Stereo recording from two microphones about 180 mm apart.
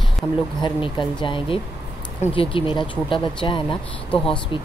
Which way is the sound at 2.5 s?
25° left (ahead or behind).